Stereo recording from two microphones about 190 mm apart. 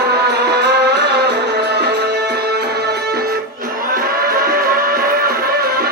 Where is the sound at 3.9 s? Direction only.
50° right (ahead or behind).